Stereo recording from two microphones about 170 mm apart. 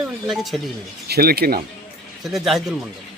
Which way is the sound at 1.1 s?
65° right (ahead or behind).